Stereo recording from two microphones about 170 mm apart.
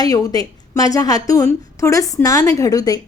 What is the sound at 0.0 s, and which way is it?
A woman's voice, 20° left (ahead or behind).